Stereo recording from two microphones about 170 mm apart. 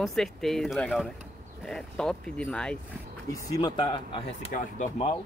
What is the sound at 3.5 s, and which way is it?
Speech, 25° left (ahead or behind).